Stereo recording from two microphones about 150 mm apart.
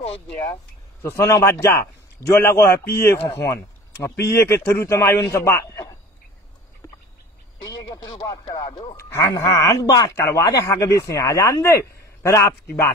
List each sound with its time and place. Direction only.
1.0 s a man's voice: 20° left (ahead or behind)
7.9 s speech: 25° left (ahead or behind)
8.6 s speech: 40° left (ahead or behind)
8.9 s a man's voice: 20° left (ahead or behind)